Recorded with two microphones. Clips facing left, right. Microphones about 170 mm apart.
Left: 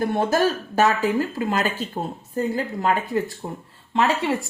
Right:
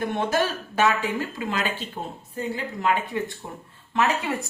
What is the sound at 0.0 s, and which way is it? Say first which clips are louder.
Speech: left 4 dB; 35° left (ahead or behind).